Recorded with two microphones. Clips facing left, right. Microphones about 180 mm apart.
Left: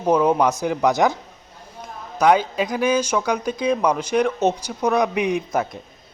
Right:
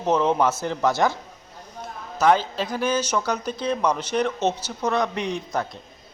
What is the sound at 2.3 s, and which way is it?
Speech, 5° left (ahead or behind).